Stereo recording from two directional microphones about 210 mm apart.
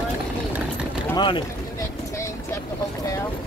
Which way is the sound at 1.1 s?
20° left (ahead or behind).